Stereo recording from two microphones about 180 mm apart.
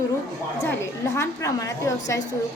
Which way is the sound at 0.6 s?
15° left (ahead or behind).